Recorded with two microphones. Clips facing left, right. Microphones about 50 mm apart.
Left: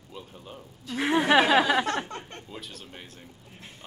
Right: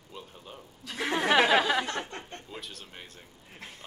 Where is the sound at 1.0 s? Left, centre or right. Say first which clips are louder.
Left 3 dB; left.